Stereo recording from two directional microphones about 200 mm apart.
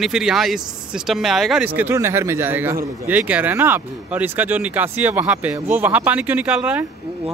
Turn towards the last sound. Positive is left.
turn(degrees=-5)  # may be behind; listen again after turning